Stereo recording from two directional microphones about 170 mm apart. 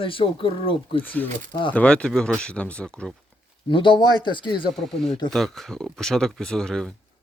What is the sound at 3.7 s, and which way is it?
Speech, 30° left (ahead or behind).